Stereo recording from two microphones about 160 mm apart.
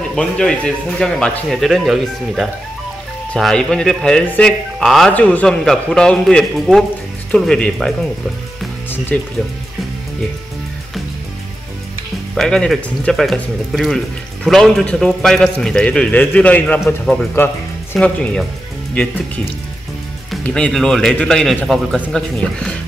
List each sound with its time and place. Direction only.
0.1 s speech: 5° left (ahead or behind)
9.1 s speech: 10° left (ahead or behind)
12.4 s speech: 5° left (ahead or behind)